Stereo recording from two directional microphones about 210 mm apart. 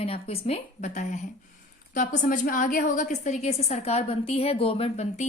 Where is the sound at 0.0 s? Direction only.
25° left (ahead or behind).